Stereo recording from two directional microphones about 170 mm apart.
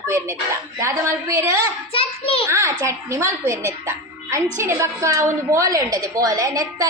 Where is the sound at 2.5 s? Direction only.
20° right (ahead or behind).